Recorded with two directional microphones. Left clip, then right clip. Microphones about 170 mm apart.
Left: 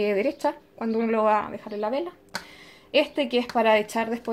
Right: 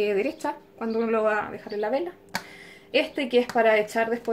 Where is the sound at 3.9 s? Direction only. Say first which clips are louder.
Right 2 dB; 55° left (ahead or behind).